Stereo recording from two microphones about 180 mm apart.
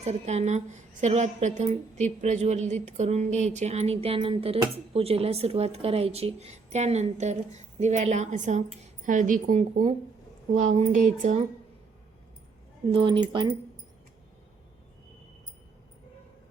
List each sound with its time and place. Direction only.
0.0 s a woman's voice: 35° right (ahead or behind)
12.9 s speech: 30° right (ahead or behind)